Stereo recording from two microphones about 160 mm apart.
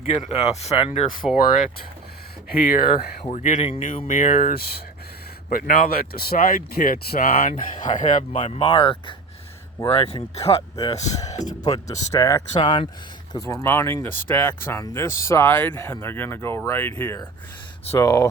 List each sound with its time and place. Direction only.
0.0 s speech: 45° left (ahead or behind)
2.5 s speech: 75° left (ahead or behind)
3.3 s speech: 50° left (ahead or behind); by 4.8 s 75° left (ahead or behind)
5.5 s speech: 60° left (ahead or behind); by 8.6 s 45° left (ahead or behind)
8.6 s speech: 35° left (ahead or behind)
10.4 s speech: 20° left (ahead or behind)
17.9 s speech: 20° left (ahead or behind)